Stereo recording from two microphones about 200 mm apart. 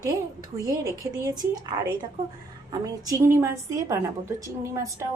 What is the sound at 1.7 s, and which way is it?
A woman's voice, 20° right (ahead or behind).